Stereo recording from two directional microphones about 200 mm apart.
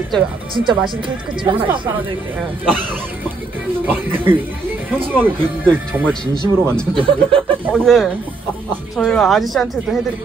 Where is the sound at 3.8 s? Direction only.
10° right (ahead or behind).